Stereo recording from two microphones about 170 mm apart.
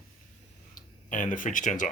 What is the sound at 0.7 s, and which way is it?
Speech, 50° left (ahead or behind).